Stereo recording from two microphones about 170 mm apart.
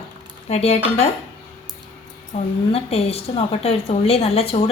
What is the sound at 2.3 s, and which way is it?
A woman's voice, 40° left (ahead or behind).